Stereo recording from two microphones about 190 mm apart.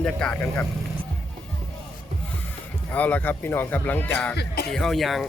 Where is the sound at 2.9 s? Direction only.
10° left (ahead or behind).